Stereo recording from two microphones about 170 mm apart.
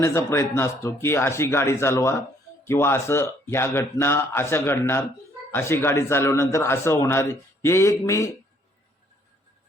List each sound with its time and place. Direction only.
0.0 s speech: 15° left (ahead or behind)